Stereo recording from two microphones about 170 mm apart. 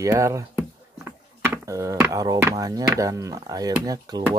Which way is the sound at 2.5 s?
20° right (ahead or behind).